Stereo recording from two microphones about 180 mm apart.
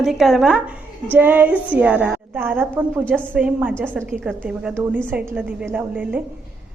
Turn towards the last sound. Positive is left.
turn(degrees=-10)  # may be behind; listen again after turning